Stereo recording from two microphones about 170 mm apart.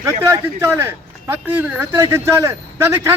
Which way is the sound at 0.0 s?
15° right (ahead or behind).